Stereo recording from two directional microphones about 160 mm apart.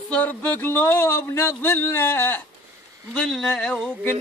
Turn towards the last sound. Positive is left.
turn(degrees=5)  # may be behind; listen again after turning